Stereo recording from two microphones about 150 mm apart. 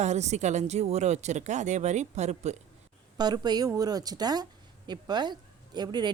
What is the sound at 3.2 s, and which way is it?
A woman's voice, 30° right (ahead or behind).